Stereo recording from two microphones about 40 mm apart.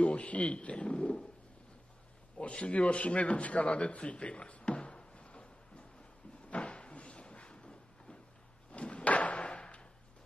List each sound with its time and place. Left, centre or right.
0.0 s a man's voice: left
2.3 s a man's voice: left
6.5 s a sound: left